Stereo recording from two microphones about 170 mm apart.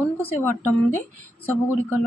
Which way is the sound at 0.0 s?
10° left (ahead or behind).